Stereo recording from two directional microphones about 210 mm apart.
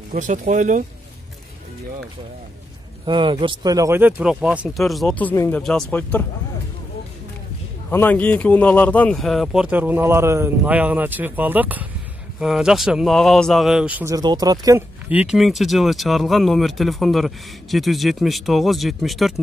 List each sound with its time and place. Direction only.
0.1 s speech: 35° right (ahead or behind)
3.1 s a man's voice: 20° right (ahead or behind); by 6.2 s 10° left (ahead or behind)
7.9 s a man's voice: 10° left (ahead or behind)